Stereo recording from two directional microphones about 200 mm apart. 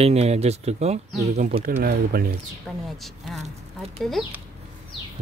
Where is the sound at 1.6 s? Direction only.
50° right (ahead or behind).